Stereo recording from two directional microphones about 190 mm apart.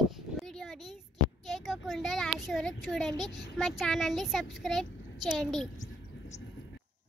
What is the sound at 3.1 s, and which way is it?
Speech, 20° right (ahead or behind).